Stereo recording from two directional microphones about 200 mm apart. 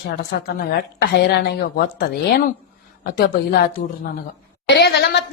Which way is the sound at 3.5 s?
50° left (ahead or behind).